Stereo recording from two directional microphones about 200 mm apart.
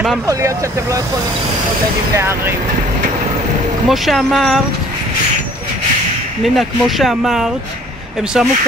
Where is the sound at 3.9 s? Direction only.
Centre (ahead or behind).